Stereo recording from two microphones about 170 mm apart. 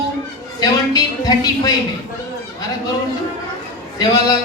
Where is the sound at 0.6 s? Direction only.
20° left (ahead or behind).